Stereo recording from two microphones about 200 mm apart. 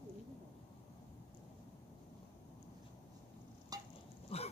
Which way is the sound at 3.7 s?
20° right (ahead or behind).